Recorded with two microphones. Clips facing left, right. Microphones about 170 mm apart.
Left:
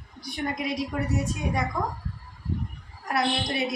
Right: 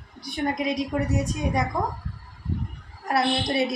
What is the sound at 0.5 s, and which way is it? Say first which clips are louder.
Speech: right 3 dB; 20° right (ahead or behind).